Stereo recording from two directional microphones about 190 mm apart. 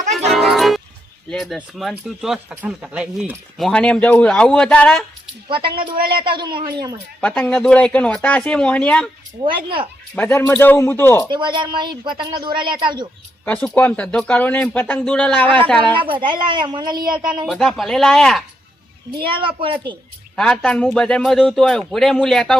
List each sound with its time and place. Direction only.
0.1 s music: centre (ahead or behind)
1.3 s speech: centre (ahead or behind)
5.5 s speech: 25° right (ahead or behind)
7.2 s speech: 10° left (ahead or behind)
9.4 s speech: 25° right (ahead or behind)
10.2 s speech: 10° left (ahead or behind)
11.3 s speech: 25° right (ahead or behind)
13.4 s speech: 10° left (ahead or behind)
16.0 s speech: 25° right (ahead or behind)
17.4 s speech: centre (ahead or behind)
19.1 s speech: 25° right (ahead or behind)
20.3 s speech: 5° left (ahead or behind)